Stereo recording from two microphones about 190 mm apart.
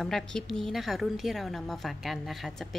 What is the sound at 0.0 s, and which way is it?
A woman's voice, 5° left (ahead or behind).